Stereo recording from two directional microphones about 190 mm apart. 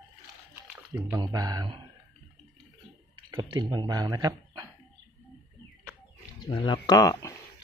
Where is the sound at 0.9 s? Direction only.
15° right (ahead or behind).